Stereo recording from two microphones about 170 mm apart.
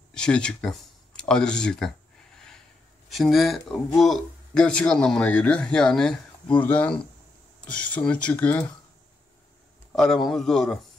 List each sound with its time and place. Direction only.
0.1 s a sound: 5° left (ahead or behind)
3.1 s speech: centre (ahead or behind)
9.9 s speech: centre (ahead or behind)